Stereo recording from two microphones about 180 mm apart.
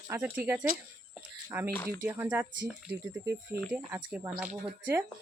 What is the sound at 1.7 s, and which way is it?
Speech, 15° left (ahead or behind).